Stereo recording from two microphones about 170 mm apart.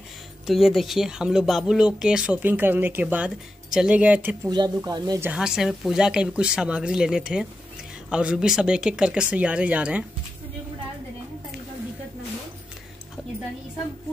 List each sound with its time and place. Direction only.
0.5 s speech: centre (ahead or behind)
4.5 s speech: 25° right (ahead or behind)
5.3 s speech: 5° right (ahead or behind)